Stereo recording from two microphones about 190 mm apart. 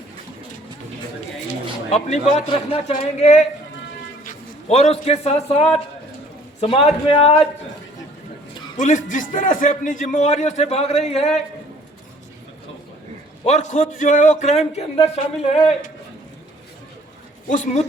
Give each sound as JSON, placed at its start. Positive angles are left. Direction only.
{"t": 1.5, "sound": "a man's voice", "side_deg": 35}
{"t": 8.8, "sound": "speech", "side_deg": 40}
{"t": 13.4, "sound": "speech", "side_deg": 35}
{"t": 17.5, "sound": "speech", "side_deg": 40}